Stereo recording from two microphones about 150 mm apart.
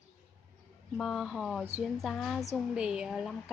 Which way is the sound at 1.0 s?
Centre (ahead or behind).